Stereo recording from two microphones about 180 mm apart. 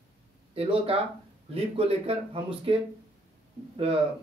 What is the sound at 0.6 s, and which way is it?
Speech, 35° right (ahead or behind).